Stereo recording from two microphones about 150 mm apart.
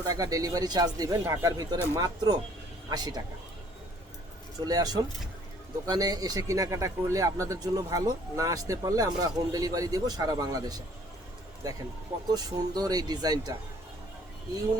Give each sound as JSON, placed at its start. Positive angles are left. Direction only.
{"t": 0.0, "sound": "speech", "side_deg": -25}
{"t": 4.6, "sound": "speech", "side_deg": -25}